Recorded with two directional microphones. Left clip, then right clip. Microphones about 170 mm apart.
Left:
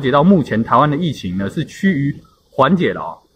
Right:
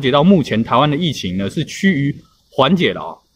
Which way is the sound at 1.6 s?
35° left (ahead or behind).